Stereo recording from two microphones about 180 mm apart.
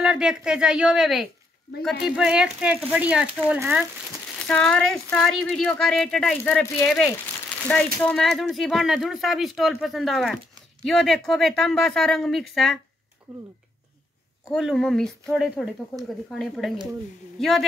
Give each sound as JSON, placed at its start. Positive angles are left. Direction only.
{"t": 0.0, "sound": "speech", "side_deg": -5}
{"t": 4.4, "sound": "speech", "side_deg": 5}
{"t": 14.5, "sound": "speech", "side_deg": 0}